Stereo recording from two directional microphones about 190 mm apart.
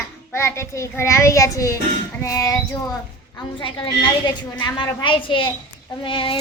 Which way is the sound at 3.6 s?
25° left (ahead or behind).